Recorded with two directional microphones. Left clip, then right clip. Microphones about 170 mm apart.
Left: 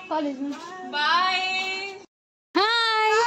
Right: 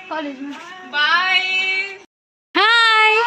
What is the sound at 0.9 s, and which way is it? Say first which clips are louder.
Music: right 6 dB; 15° right (ahead or behind).